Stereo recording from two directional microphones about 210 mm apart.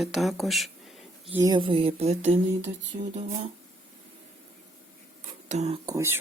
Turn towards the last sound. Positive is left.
turn(degrees=-15)  # may be behind; listen again after turning